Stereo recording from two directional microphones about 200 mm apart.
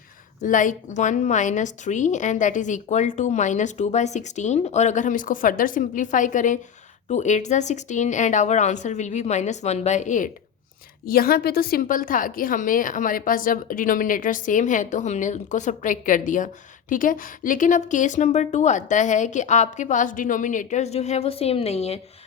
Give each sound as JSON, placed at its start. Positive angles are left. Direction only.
{"t": 0.4, "sound": "a woman's voice", "side_deg": 40}